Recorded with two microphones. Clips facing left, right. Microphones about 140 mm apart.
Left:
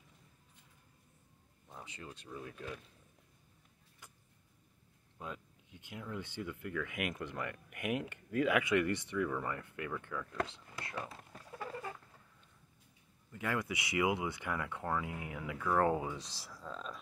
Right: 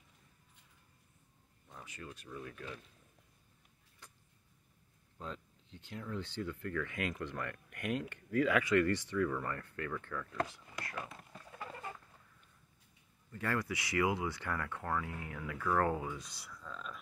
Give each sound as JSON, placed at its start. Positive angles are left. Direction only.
{"t": 1.7, "sound": "speech", "side_deg": 20}
{"t": 5.2, "sound": "speech", "side_deg": 10}
{"t": 10.5, "sound": "whispering", "side_deg": 25}
{"t": 13.3, "sound": "speech", "side_deg": 15}
{"t": 16.2, "sound": "speech", "side_deg": 30}